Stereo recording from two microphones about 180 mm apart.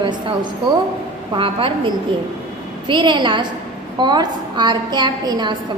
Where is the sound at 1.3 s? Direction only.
30° right (ahead or behind).